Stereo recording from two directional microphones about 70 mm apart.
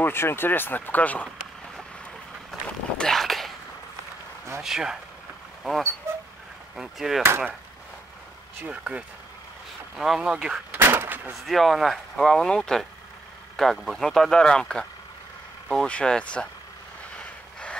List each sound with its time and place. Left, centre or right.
0.0 s speech: left
3.0 s a sound: centre
4.6 s speech: centre
7.2 s speech: right
8.6 s speech: centre
9.9 s speech: centre
10.7 s artillery fire: right
11.4 s speech: centre
17.2 s vehicle: centre